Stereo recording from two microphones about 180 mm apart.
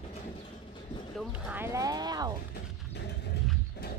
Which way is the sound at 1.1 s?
Centre (ahead or behind).